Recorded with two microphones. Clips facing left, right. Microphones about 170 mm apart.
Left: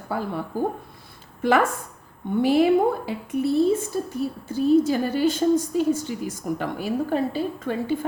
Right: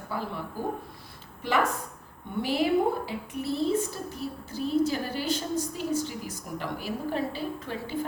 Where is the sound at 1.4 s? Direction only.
45° left (ahead or behind).